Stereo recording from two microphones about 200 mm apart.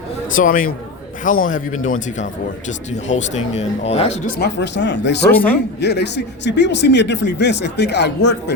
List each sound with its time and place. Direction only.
0.3 s a man's voice: 45° left (ahead or behind)
4.4 s speech: 60° left (ahead or behind)
5.3 s speech: 10° left (ahead or behind)
5.8 s speech: 55° left (ahead or behind)